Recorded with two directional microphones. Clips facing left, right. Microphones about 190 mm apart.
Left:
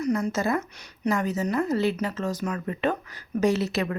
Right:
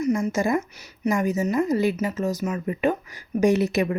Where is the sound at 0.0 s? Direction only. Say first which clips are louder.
Right 3 dB; 10° right (ahead or behind).